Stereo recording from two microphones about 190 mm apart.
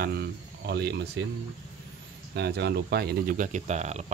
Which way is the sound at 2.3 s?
60° right (ahead or behind).